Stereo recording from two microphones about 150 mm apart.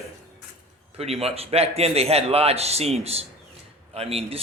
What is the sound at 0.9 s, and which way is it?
A man's voice, 40° right (ahead or behind).